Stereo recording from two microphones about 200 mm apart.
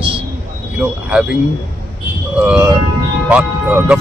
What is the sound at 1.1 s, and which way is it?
Speech, 5° right (ahead or behind).